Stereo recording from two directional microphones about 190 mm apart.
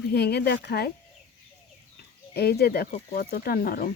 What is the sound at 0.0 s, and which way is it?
Speech, 60° left (ahead or behind).